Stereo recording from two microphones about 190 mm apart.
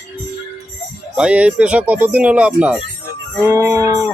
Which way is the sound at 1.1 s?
5° right (ahead or behind).